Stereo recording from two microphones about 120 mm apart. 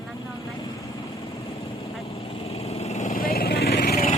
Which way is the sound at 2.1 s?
55° left (ahead or behind).